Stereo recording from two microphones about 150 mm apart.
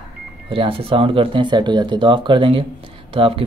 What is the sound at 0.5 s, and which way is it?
Speech, 35° right (ahead or behind).